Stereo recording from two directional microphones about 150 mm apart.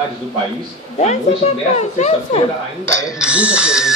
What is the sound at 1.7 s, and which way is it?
Speech, 50° left (ahead or behind).